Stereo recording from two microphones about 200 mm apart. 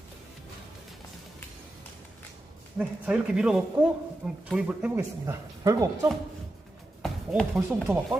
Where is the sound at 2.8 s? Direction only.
5° right (ahead or behind).